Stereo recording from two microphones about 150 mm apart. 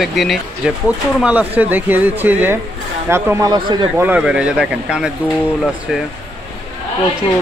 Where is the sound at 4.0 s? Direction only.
10° right (ahead or behind).